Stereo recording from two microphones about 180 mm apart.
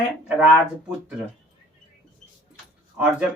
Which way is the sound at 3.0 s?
10° right (ahead or behind).